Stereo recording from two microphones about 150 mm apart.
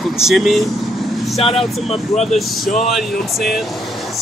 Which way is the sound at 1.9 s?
45° left (ahead or behind).